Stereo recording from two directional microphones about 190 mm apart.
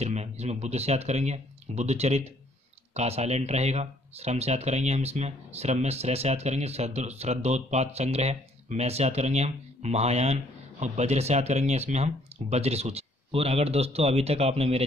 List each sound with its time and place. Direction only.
0.0 s speech: 35° right (ahead or behind)